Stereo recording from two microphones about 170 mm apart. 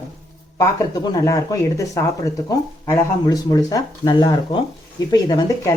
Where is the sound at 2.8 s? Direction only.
20° left (ahead or behind).